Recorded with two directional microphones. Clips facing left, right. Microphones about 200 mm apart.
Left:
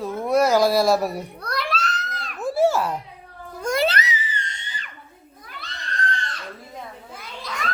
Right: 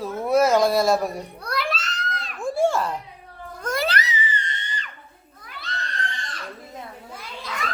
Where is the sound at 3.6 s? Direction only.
20° left (ahead or behind).